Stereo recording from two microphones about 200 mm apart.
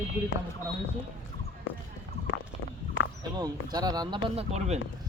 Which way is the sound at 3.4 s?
20° right (ahead or behind).